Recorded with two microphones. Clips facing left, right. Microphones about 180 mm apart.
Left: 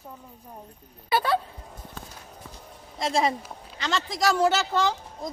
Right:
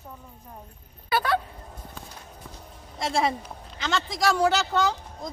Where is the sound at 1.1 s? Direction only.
30° left (ahead or behind).